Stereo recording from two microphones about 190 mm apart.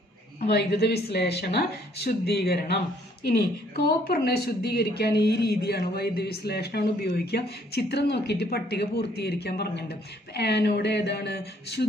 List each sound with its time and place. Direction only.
0.5 s a woman's voice: 60° left (ahead or behind)